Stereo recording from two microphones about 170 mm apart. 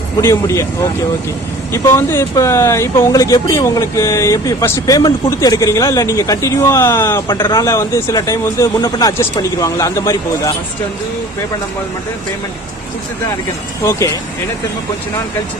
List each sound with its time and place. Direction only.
0.2 s speech: 15° left (ahead or behind)
1.7 s speech: 15° left (ahead or behind)